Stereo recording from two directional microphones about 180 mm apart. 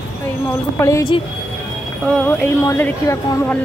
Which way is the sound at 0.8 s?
15° left (ahead or behind).